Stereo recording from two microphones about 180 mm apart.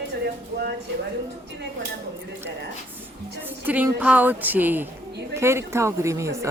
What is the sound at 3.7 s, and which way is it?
A woman's voice, 10° right (ahead or behind).